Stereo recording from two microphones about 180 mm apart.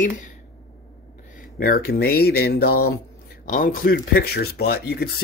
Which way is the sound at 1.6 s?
55° left (ahead or behind).